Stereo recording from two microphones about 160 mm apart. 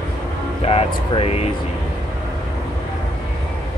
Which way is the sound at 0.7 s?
35° left (ahead or behind).